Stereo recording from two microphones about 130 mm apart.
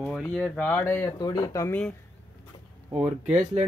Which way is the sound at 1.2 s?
30° left (ahead or behind).